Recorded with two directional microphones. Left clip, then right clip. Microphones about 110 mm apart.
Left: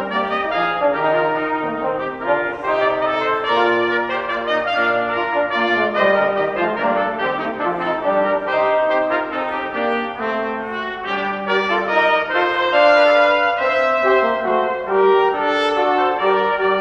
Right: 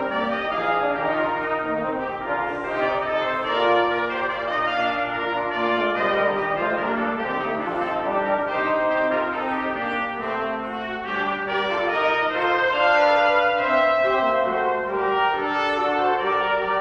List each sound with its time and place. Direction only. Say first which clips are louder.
11.9 s brass instrument: left 6 dB; 35° left (ahead or behind)